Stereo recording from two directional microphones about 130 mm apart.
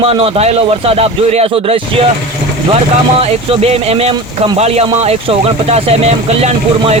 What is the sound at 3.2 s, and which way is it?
Speech, 50° right (ahead or behind).